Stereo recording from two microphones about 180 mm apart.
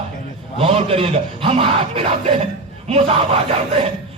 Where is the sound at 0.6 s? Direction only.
35° right (ahead or behind).